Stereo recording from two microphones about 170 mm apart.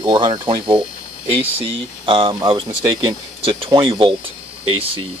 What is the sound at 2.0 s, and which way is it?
Speech, 30° right (ahead or behind).